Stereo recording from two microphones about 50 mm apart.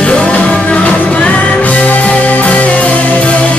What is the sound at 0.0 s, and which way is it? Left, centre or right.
Music, left.